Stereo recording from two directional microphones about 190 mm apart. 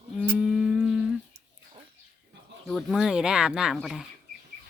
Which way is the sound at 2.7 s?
Centre (ahead or behind).